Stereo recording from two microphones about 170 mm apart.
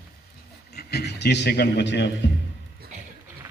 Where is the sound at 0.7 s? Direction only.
70° left (ahead or behind); by 2.2 s 90° left.